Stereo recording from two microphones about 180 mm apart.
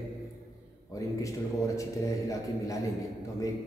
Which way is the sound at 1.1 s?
15° left (ahead or behind).